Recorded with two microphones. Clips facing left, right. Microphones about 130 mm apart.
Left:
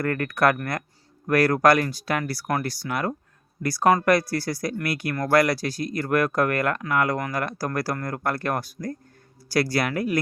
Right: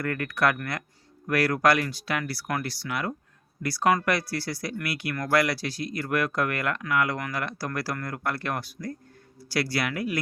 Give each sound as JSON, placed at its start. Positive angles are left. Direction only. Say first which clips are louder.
{"t": 0.0, "sound": "speech", "louder": "left 4 dB", "side_deg": 45}